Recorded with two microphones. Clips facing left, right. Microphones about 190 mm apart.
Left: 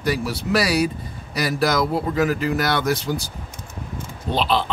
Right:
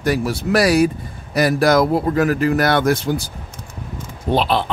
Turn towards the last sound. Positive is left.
turn(degrees=-55)  # may be behind; listen again after turning